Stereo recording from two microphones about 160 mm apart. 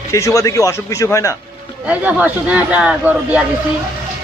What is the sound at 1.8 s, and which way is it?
Speech, 10° right (ahead or behind).